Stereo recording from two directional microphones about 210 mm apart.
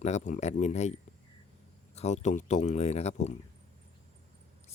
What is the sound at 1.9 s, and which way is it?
Speech, 35° left (ahead or behind).